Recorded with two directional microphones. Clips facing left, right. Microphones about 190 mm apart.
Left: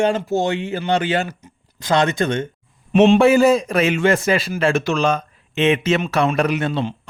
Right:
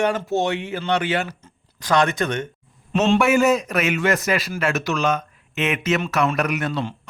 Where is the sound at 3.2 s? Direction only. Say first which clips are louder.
Left 4 dB; 30° left (ahead or behind).